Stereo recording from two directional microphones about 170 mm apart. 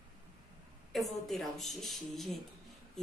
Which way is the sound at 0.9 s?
Centre (ahead or behind).